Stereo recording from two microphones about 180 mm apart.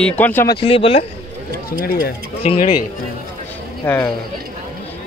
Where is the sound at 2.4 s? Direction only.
30° left (ahead or behind).